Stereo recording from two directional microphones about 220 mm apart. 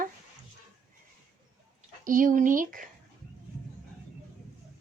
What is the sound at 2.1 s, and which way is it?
Speech, 40° right (ahead or behind).